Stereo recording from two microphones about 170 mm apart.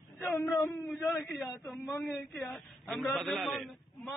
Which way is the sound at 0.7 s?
5° left (ahead or behind).